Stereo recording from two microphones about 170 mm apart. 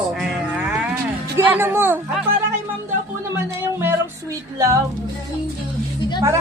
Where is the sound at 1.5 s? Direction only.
15° right (ahead or behind).